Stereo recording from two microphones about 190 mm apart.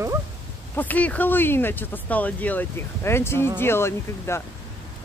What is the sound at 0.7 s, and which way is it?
Speech, 10° left (ahead or behind).